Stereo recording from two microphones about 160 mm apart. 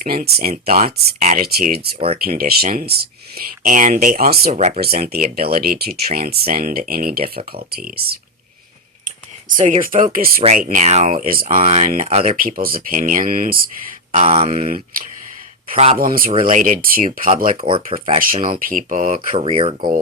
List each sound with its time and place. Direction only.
0.0 s speech: 65° right (ahead or behind)
1.5 s speech: 75° right (ahead or behind)
4.5 s speech: 45° right (ahead or behind)
4.8 s speech: 70° right (ahead or behind)
9.0 s speech: 55° right (ahead or behind)
10.4 s speech: 50° right (ahead or behind)
12.4 s speech: 60° right (ahead or behind)
14.2 s speech: 40° right (ahead or behind)
15.7 s speech: 40° right (ahead or behind)
16.0 s speech: 65° right (ahead or behind)
16.4 s speech: 50° right (ahead or behind)
17.6 s speech: 35° right (ahead or behind)
18.2 s speech: 60° right (ahead or behind)
19.5 s speech: 35° right (ahead or behind)